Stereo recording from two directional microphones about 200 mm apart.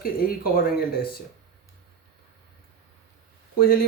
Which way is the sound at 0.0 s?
45° left (ahead or behind).